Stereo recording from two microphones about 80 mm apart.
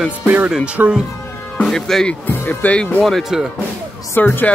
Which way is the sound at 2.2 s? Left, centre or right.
Left.